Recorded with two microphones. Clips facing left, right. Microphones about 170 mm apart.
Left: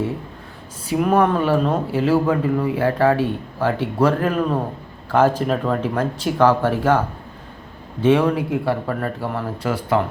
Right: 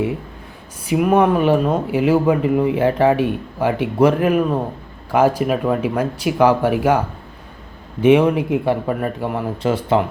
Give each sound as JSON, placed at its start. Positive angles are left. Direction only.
{"t": 0.9, "sound": "a man's voice", "side_deg": -5}
{"t": 8.0, "sound": "a man's voice", "side_deg": -15}